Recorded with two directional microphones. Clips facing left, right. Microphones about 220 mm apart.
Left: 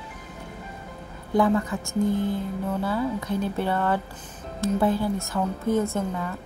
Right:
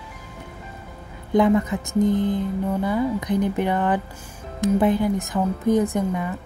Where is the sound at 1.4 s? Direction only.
20° right (ahead or behind).